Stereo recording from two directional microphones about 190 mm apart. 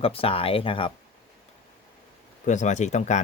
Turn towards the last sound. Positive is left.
turn(degrees=40)  # may be behind; listen again after turning